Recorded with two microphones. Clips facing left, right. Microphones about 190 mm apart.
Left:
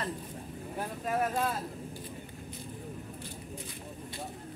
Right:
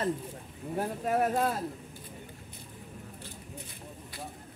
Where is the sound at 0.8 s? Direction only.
35° right (ahead or behind).